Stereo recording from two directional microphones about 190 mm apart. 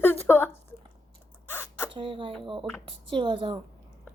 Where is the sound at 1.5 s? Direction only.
10° left (ahead or behind).